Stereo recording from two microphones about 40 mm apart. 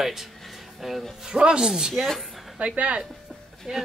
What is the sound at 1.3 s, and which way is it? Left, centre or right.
Speech, centre.